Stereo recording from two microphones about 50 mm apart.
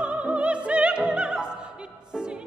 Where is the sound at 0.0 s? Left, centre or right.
Right.